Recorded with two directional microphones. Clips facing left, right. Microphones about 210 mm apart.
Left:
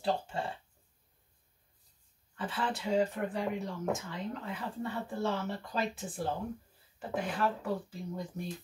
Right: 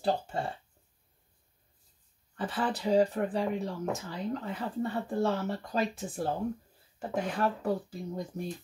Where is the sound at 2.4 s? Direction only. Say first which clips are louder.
Right 3 dB; 35° right (ahead or behind).